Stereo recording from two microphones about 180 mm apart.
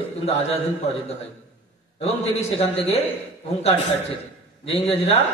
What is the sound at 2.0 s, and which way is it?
A man's voice, 35° left (ahead or behind).